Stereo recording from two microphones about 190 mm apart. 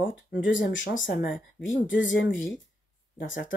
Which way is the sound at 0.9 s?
70° left (ahead or behind).